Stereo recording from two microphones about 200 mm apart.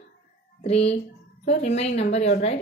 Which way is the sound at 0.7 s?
30° left (ahead or behind).